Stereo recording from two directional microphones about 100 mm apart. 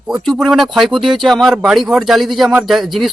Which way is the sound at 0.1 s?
5° right (ahead or behind).